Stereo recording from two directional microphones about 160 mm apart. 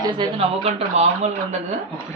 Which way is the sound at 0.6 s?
40° right (ahead or behind).